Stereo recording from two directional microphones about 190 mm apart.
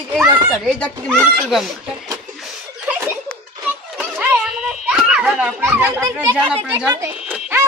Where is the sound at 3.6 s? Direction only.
10° right (ahead or behind).